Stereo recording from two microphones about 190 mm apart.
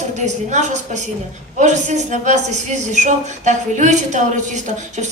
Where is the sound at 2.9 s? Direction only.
40° right (ahead or behind).